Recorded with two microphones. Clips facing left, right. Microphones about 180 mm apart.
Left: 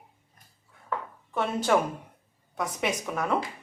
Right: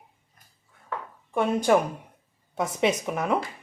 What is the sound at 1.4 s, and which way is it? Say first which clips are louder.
Speech: right 3 dB; 15° right (ahead or behind).